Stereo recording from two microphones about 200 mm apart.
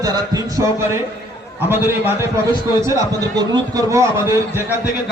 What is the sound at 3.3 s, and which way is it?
Speech, 20° right (ahead or behind).